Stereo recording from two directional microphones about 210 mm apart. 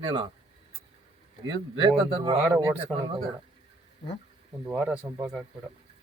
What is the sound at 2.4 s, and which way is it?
Speech, 5° right (ahead or behind).